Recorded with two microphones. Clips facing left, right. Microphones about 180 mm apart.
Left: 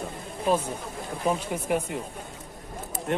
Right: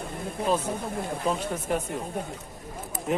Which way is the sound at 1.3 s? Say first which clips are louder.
Left 3 dB; 10° left (ahead or behind).